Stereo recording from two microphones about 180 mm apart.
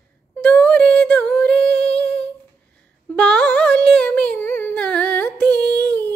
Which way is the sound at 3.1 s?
5° left (ahead or behind).